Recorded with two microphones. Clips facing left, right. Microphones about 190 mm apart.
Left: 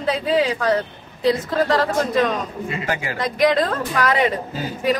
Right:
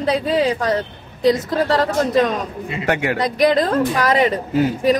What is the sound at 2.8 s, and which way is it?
Speech, 70° right (ahead or behind).